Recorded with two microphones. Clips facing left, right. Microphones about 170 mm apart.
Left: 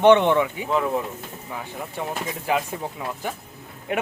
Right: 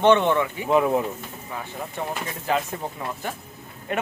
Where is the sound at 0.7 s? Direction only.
20° right (ahead or behind).